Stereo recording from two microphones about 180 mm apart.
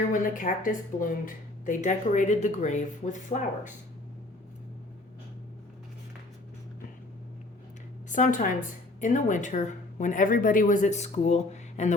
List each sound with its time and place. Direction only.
0.1 s speech: 45° left (ahead or behind)
8.1 s speech: 45° left (ahead or behind)